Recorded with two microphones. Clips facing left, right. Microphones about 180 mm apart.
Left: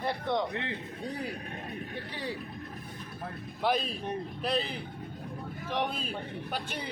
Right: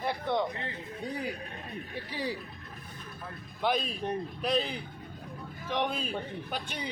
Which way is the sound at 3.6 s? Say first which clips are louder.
Even; centre (ahead or behind).